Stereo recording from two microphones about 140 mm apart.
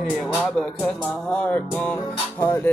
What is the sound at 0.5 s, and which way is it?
Speech, 5° left (ahead or behind).